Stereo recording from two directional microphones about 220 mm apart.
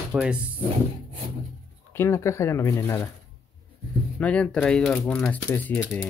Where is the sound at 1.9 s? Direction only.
10° left (ahead or behind).